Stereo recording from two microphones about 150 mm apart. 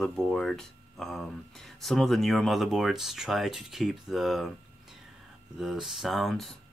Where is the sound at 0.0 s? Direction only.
5° left (ahead or behind).